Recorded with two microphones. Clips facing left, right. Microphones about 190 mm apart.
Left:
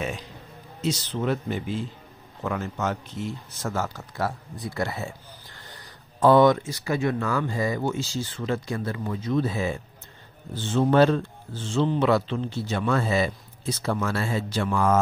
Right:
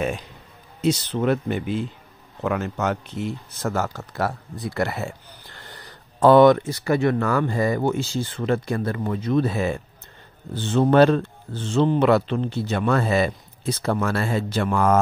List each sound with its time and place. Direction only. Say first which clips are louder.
0.7 s speech: right 6 dB; 60° right (ahead or behind)